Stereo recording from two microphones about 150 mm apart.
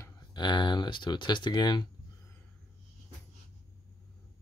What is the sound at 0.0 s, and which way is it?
Speech, 30° left (ahead or behind).